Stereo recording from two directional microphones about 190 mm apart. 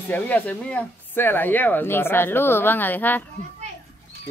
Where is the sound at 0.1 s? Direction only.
10° left (ahead or behind).